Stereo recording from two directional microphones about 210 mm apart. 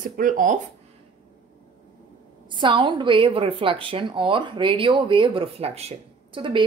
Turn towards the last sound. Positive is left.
turn(degrees=-25)  # may be behind; listen again after turning